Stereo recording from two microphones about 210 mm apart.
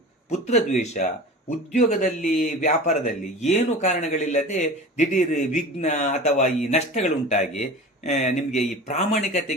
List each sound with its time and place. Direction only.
0.3 s speech: 35° left (ahead or behind)